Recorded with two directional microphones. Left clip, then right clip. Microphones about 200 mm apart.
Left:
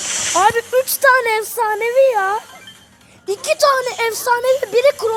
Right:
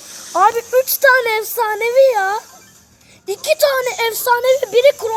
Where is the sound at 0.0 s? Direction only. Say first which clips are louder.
Left 13 dB; 50° left (ahead or behind).